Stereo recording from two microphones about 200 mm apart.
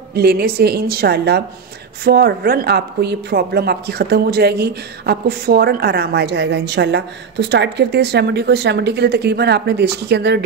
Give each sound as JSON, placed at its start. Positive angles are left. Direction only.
{"t": 0.1, "sound": "a woman's voice", "side_deg": -50}